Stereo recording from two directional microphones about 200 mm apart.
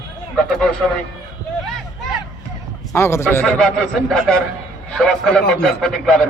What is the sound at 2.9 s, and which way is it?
Speech, 15° left (ahead or behind).